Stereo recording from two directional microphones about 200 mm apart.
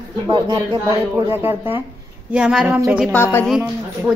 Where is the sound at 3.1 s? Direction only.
10° left (ahead or behind).